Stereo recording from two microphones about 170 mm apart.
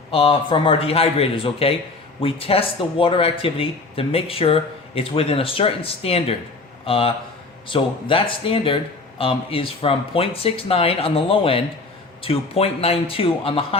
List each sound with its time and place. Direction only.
0.1 s speech: 30° left (ahead or behind)